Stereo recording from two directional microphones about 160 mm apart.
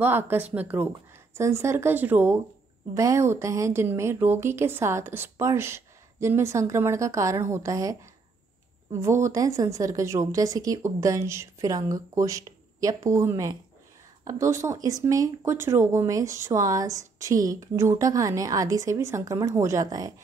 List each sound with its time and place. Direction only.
0.0 s a woman's voice: 15° right (ahead or behind)
9.0 s a woman's voice: 20° right (ahead or behind)